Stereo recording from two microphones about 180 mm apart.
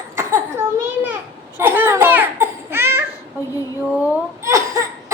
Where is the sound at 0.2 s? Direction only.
15° right (ahead or behind).